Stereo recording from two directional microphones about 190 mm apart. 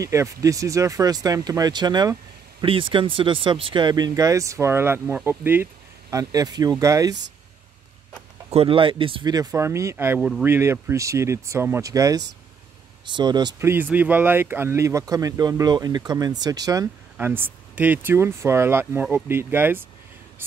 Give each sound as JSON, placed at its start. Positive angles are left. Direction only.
{"t": 0.0, "sound": "speech", "side_deg": -15}
{"t": 8.5, "sound": "speech", "side_deg": -30}